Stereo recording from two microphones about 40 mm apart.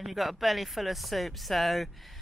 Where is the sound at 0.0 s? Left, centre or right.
Centre.